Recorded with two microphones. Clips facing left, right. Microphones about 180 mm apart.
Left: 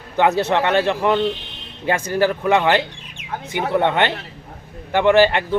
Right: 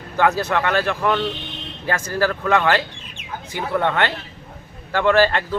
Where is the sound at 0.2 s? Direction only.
20° left (ahead or behind).